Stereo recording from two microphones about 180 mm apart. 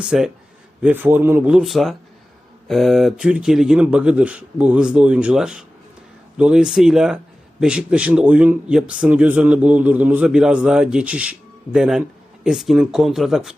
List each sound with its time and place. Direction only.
0.0 s a man's voice: 5° right (ahead or behind)